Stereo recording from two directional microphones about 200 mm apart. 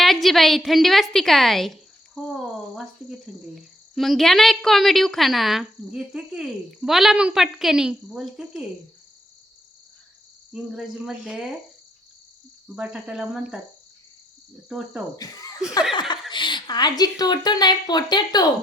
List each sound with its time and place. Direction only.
0.0 s a woman's voice: centre (ahead or behind)
10.5 s speech: 5° right (ahead or behind)
12.7 s speech: 5° right (ahead or behind)
14.7 s speech: 5° right (ahead or behind)
15.1 s speech: 20° left (ahead or behind)